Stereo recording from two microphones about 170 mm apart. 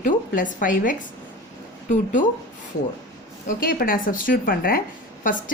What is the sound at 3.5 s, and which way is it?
A woman's voice, 55° left (ahead or behind).